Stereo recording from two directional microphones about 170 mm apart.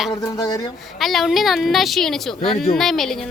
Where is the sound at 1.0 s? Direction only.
Centre (ahead or behind).